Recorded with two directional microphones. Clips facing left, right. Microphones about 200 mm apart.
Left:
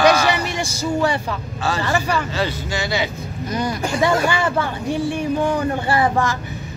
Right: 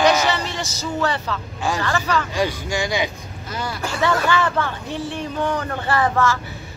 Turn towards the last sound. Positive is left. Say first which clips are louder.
# left 1 dB
turn(degrees=15)  # may be behind; listen again after turning